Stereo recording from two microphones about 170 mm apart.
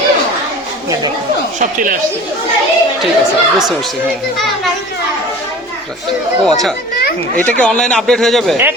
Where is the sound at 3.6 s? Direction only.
Centre (ahead or behind).